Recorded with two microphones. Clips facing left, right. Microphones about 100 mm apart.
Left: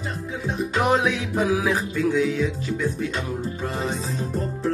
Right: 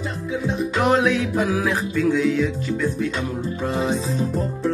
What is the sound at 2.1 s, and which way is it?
Speech, 5° left (ahead or behind).